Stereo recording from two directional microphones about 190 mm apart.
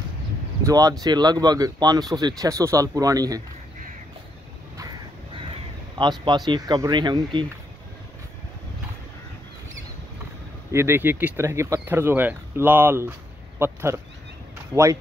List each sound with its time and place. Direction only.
0.7 s speech: 20° right (ahead or behind)
5.9 s speech: 25° right (ahead or behind)
10.7 s speech: 15° right (ahead or behind)